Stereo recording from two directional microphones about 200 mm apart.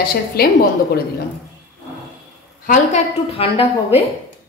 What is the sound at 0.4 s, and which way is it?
Speech, 50° left (ahead or behind).